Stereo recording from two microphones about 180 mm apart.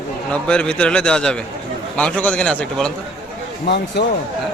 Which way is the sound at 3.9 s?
70° left (ahead or behind).